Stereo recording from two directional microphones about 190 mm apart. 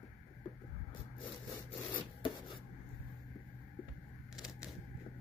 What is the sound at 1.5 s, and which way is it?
Rub, 25° left (ahead or behind).